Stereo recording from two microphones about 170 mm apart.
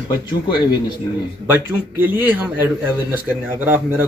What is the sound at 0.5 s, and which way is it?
Speech, 25° left (ahead or behind).